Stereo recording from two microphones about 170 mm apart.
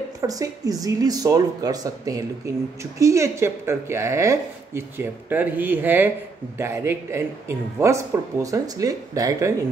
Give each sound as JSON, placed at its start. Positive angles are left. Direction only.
{"t": 0.2, "sound": "speech", "side_deg": -20}